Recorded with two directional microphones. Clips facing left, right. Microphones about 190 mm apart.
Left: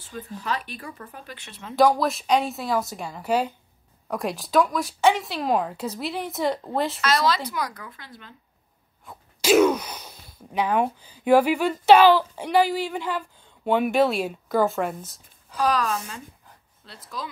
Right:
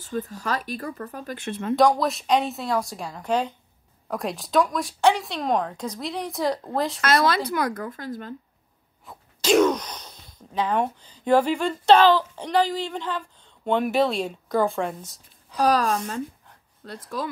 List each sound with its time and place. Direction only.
0.0 s speech: 45° right (ahead or behind)
1.8 s speech: centre (ahead or behind)
7.0 s speech: 55° right (ahead or behind)
9.4 s speech: 10° left (ahead or behind)
15.5 s a woman's voice: 40° right (ahead or behind)